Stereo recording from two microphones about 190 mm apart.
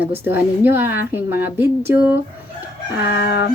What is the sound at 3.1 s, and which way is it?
Speech, 65° left (ahead or behind).